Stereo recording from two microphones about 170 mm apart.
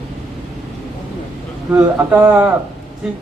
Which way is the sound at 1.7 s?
15° right (ahead or behind).